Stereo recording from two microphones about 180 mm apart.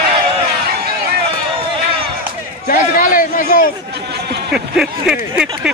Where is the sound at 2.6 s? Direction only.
50° left (ahead or behind).